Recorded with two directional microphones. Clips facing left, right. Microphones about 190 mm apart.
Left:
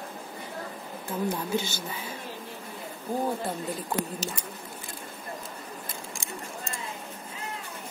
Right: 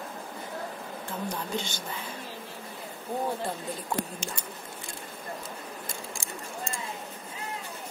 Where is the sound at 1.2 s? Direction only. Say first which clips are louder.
Left 5 dB; 5° left (ahead or behind).